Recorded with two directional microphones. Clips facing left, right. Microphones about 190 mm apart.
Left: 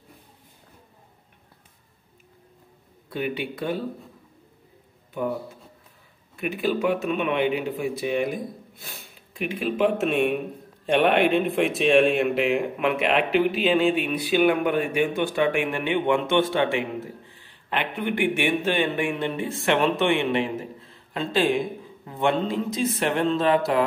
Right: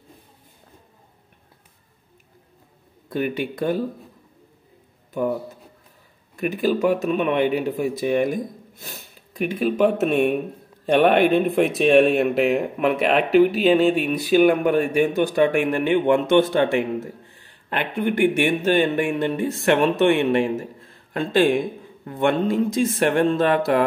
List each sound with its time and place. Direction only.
3.1 s speech: 45° right (ahead or behind)
6.3 s speech: 40° right (ahead or behind)